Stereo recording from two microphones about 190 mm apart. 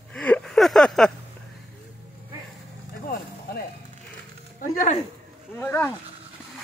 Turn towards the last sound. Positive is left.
turn(degrees=10)  # may be behind; listen again after turning